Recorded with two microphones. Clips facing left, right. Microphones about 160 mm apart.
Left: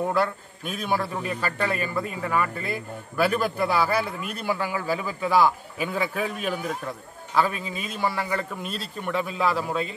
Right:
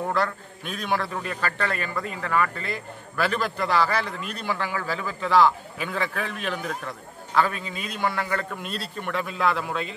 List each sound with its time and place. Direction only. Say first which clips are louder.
0.1 s a man's voice: left 1 dB; 5° left (ahead or behind)